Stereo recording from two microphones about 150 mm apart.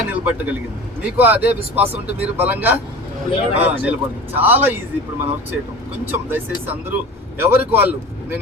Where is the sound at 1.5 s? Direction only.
40° right (ahead or behind).